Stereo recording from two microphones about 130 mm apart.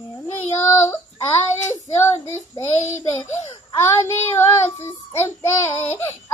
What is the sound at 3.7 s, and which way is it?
Child singing, 20° left (ahead or behind).